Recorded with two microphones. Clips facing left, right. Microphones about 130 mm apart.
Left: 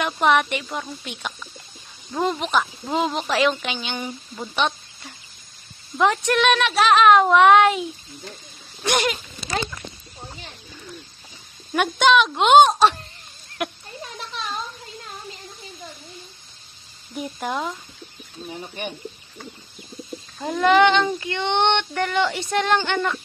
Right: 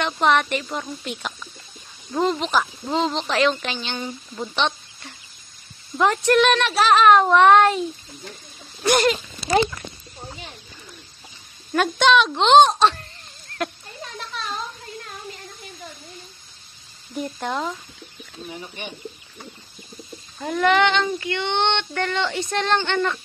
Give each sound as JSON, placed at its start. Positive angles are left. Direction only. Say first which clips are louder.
{"t": 0.0, "sound": "speech", "louder": "even", "side_deg": 5}
{"t": 4.6, "sound": "a sound", "louder": "left 1 dB", "side_deg": 5}
{"t": 5.9, "sound": "speech", "louder": "right 2 dB", "side_deg": 0}
{"t": 8.8, "sound": "speech", "louder": "right 4 dB", "side_deg": 0}
{"t": 11.7, "sound": "speech", "louder": "even", "side_deg": 0}
{"t": 17.1, "sound": "speech", "louder": "right 1 dB", "side_deg": 5}
{"t": 20.4, "sound": "speech", "louder": "left 2 dB", "side_deg": 20}